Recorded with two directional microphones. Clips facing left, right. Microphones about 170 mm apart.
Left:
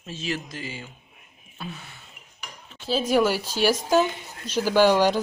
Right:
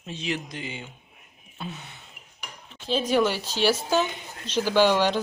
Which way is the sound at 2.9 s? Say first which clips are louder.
Left 2 dB; 10° left (ahead or behind).